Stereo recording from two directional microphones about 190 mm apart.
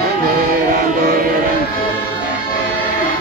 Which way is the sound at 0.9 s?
50° right (ahead or behind).